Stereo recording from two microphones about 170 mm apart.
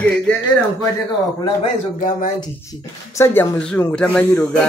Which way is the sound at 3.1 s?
15° left (ahead or behind).